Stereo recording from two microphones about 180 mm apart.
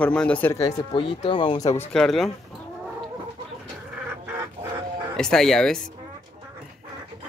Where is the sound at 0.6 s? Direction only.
30° left (ahead or behind).